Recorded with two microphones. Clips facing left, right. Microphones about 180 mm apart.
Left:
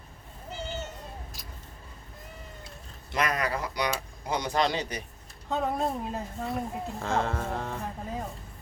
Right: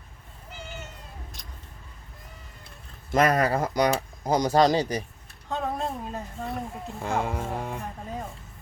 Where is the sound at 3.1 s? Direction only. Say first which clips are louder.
Right 7 dB; 45° right (ahead or behind).